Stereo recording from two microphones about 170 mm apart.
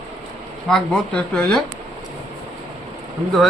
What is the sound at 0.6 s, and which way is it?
Speech, 5° left (ahead or behind).